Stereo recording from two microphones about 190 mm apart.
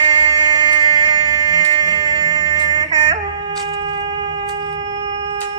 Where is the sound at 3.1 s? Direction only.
30° right (ahead or behind).